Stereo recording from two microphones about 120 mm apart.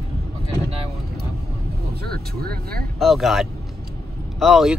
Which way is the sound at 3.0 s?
Centre (ahead or behind).